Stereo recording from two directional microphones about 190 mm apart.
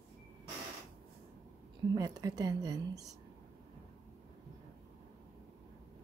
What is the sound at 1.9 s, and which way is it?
Speech, 20° right (ahead or behind).